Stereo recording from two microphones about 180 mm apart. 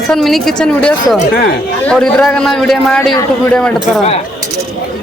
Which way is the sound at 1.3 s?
60° left (ahead or behind).